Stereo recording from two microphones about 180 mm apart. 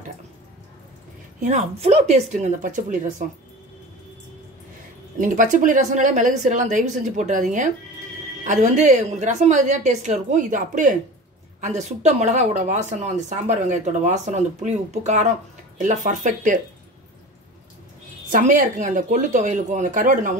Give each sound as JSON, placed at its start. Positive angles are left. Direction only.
{"t": 1.4, "sound": "speech", "side_deg": -40}
{"t": 5.2, "sound": "a woman's voice", "side_deg": -45}
{"t": 18.3, "sound": "a woman's voice", "side_deg": -45}